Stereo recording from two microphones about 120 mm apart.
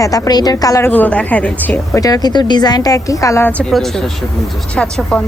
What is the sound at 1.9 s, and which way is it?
Speech, 35° left (ahead or behind).